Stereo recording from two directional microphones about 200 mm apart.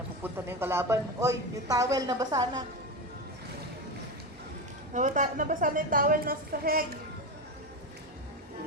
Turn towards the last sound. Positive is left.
turn(degrees=-45)  # may be behind; listen again after turning